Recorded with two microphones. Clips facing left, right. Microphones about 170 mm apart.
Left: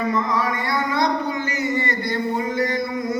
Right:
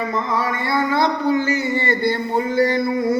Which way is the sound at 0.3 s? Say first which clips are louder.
Right 2 dB; 30° right (ahead or behind).